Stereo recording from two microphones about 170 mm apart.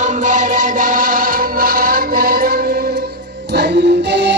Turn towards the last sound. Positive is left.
turn(degrees=-90)